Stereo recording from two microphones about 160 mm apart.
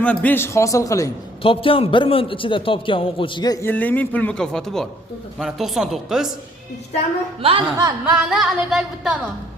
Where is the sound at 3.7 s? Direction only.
10° left (ahead or behind).